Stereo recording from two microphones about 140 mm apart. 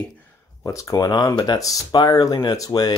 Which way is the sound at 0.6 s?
25° left (ahead or behind).